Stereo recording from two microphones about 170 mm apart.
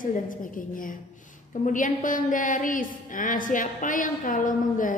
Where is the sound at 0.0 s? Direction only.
55° left (ahead or behind).